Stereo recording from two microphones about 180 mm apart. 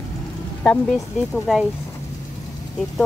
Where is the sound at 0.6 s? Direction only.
5° left (ahead or behind).